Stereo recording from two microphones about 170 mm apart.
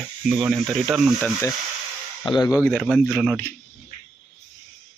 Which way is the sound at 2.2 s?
25° left (ahead or behind).